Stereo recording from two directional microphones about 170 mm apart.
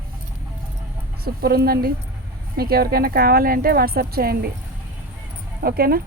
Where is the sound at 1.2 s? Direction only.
65° right (ahead or behind).